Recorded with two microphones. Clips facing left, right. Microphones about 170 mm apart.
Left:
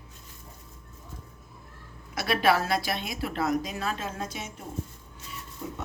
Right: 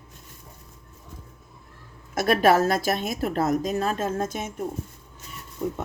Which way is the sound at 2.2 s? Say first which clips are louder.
Right 5 dB; 45° right (ahead or behind).